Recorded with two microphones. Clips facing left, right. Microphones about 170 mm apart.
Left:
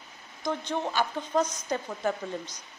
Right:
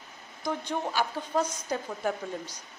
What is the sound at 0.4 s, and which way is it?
A woman's voice, 10° right (ahead or behind).